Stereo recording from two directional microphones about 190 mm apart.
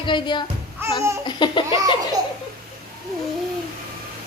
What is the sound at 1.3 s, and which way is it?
Speech, 25° left (ahead or behind).